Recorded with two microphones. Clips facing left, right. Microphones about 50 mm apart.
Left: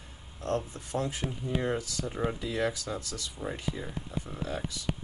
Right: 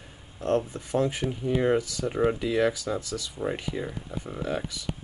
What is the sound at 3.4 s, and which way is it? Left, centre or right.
Speech, centre.